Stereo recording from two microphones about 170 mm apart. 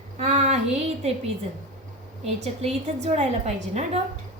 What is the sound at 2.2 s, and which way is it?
A woman's voice, 40° right (ahead or behind).